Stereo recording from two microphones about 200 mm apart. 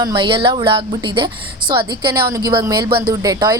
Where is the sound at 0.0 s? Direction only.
20° right (ahead or behind).